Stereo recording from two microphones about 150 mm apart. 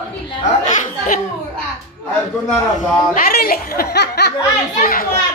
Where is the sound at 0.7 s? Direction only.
55° left (ahead or behind).